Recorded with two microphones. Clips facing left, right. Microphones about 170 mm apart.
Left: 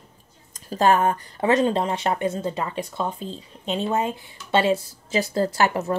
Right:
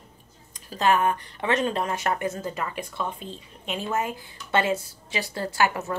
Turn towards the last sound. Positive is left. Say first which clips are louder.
# left 4 dB
turn(degrees=35)  # may be behind; listen again after turning